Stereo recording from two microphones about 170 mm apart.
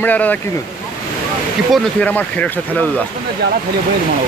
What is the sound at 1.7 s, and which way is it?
Speech, 10° left (ahead or behind).